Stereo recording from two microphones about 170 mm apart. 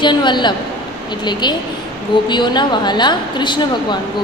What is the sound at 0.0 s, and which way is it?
A woman's voice, 25° left (ahead or behind).